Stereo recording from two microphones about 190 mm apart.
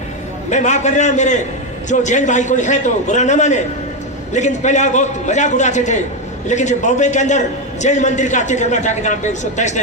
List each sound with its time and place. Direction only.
0.5 s a man's voice: 40° left (ahead or behind)